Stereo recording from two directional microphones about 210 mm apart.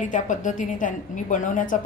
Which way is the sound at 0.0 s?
35° left (ahead or behind).